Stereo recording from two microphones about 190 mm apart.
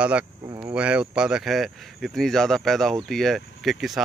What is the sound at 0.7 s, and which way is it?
Speech, 5° right (ahead or behind).